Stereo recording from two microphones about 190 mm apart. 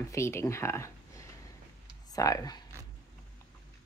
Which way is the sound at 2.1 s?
20° left (ahead or behind).